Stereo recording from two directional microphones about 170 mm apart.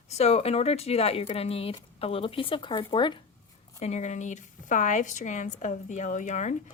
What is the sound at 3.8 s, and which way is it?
Speech, 40° left (ahead or behind).